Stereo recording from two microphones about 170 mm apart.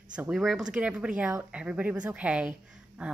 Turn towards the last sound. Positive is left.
turn(degrees=-5)  # may be behind; listen again after turning